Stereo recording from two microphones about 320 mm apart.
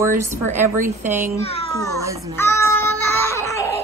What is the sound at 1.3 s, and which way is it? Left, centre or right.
Speech, centre.